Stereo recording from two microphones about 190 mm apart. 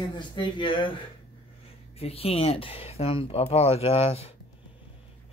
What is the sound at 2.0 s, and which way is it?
Speech, 30° left (ahead or behind).